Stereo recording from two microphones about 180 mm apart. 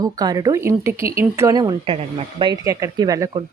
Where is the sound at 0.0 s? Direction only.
20° right (ahead or behind).